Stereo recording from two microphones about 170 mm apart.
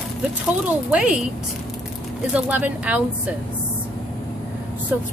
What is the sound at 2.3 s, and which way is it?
Speech, 10° right (ahead or behind).